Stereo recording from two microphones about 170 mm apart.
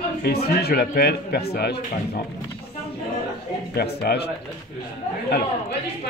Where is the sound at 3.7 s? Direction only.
70° left (ahead or behind).